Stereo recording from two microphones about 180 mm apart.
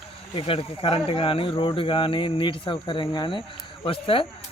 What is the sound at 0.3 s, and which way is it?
Speech, 30° left (ahead or behind).